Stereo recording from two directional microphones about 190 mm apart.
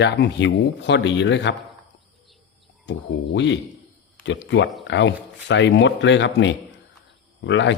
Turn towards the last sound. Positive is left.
turn(degrees=75)  # may be behind; listen again after turning